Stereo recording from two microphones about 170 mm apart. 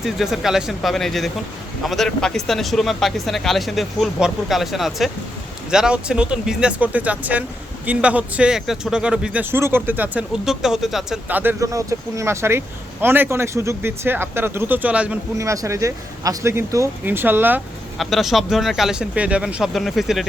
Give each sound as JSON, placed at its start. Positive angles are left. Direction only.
{"t": 0.0, "sound": "speech", "side_deg": 0}
{"t": 15.4, "sound": "speech", "side_deg": -20}
{"t": 17.9, "sound": "speech", "side_deg": 0}